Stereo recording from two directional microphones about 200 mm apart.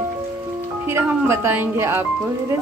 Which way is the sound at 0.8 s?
10° right (ahead or behind).